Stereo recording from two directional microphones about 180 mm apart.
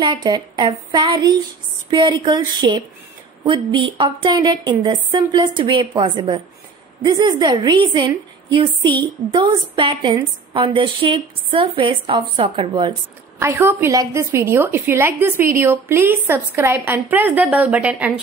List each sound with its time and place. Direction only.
0.0 s a woman's voice: 25° right (ahead or behind)
13.4 s a woman's voice: 15° right (ahead or behind)